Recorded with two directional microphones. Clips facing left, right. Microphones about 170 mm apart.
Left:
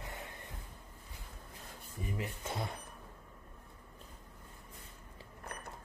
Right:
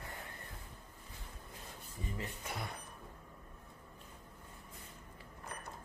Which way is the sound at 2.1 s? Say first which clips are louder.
Left 4 dB; 25° left (ahead or behind).